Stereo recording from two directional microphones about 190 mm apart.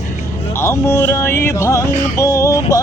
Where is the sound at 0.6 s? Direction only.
15° left (ahead or behind).